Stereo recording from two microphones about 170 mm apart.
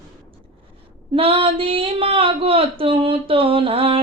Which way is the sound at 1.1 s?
30° right (ahead or behind).